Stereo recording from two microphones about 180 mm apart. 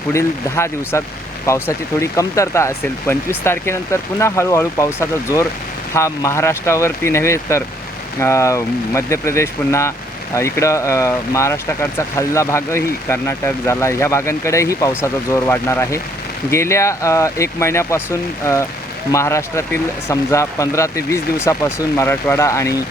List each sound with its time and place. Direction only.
0.1 s speech: 15° left (ahead or behind)